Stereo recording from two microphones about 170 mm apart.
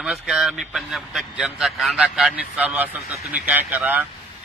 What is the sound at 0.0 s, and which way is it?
A man's voice, centre (ahead or behind).